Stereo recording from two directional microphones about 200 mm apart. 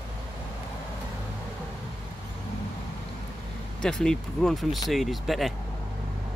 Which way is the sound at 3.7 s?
5° left (ahead or behind).